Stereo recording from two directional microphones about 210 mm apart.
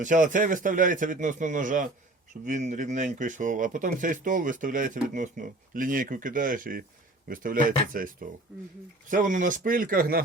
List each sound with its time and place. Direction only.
0.0 s speech: 40° right (ahead or behind)